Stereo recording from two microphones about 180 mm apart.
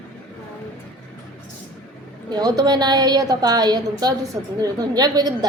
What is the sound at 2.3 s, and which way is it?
A woman's voice, 20° right (ahead or behind).